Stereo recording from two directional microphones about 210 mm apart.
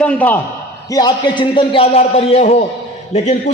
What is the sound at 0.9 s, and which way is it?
A man's voice, 20° left (ahead or behind).